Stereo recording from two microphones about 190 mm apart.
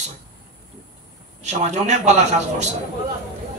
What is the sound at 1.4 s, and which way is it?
Speech, 40° right (ahead or behind).